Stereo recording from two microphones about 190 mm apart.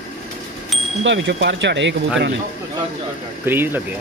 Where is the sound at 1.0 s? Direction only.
70° right (ahead or behind).